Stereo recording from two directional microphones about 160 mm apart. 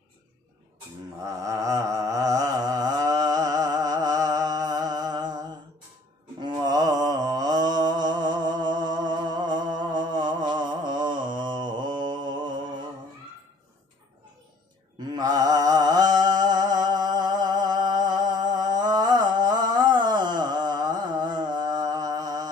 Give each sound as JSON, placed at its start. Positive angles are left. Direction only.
{"t": 1.2, "sound": "a sound", "side_deg": -20}
{"t": 6.4, "sound": "mantra", "side_deg": -25}
{"t": 15.1, "sound": "music", "side_deg": -25}